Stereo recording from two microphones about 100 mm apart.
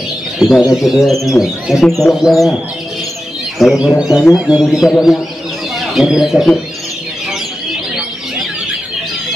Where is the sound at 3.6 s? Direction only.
5° right (ahead or behind).